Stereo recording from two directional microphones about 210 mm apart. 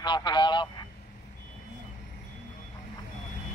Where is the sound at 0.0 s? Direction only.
20° left (ahead or behind).